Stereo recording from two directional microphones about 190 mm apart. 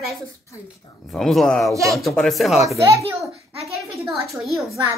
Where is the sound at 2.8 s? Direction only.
15° right (ahead or behind).